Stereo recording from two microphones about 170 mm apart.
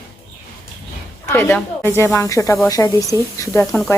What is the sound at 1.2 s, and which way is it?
A woman's voice, 10° left (ahead or behind).